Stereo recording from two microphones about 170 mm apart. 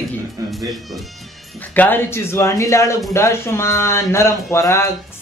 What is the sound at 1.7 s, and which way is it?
Speech, 10° left (ahead or behind).